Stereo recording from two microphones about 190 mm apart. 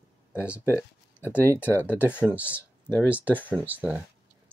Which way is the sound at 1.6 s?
10° left (ahead or behind).